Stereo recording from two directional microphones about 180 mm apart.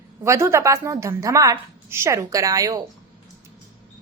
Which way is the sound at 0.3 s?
15° right (ahead or behind).